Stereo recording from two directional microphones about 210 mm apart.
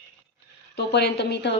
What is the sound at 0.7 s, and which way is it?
Speech, 50° left (ahead or behind).